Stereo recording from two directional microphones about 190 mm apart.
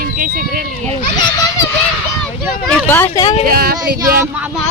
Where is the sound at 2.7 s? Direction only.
10° left (ahead or behind).